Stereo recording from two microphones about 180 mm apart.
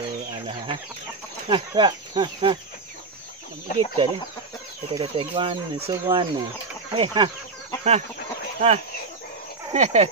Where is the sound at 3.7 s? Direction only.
30° right (ahead or behind).